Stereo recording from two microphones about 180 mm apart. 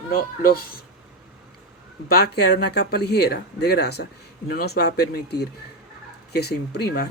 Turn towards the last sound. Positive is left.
turn(degrees=60)  # may be behind; listen again after turning